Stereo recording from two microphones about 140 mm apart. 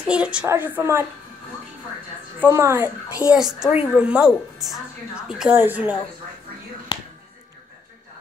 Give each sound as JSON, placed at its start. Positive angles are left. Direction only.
{"t": 0.0, "sound": "a woman's voice", "side_deg": -5}
{"t": 2.4, "sound": "a woman's voice", "side_deg": -20}
{"t": 5.5, "sound": "a woman's voice", "side_deg": -15}